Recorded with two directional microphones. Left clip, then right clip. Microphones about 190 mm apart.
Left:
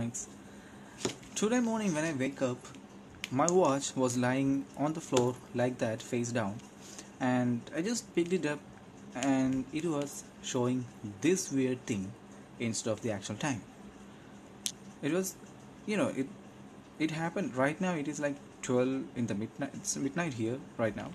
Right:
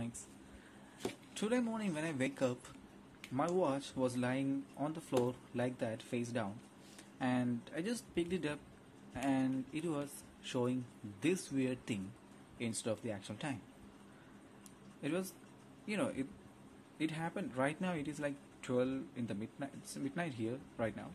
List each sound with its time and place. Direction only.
1.3 s speech: centre (ahead or behind)
2.1 s speech: 15° right (ahead or behind)
3.3 s speech: centre (ahead or behind)
15.0 s speech: 5° right (ahead or behind)